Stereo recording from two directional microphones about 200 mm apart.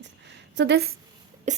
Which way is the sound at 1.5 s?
35° right (ahead or behind).